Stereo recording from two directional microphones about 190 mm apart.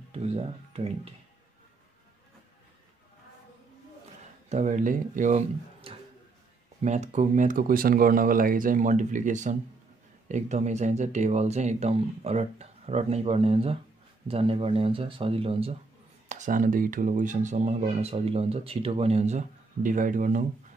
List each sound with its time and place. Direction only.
0.1 s speech: 30° right (ahead or behind)
4.5 s speech: 40° right (ahead or behind)
16.3 s speech: 40° right (ahead or behind)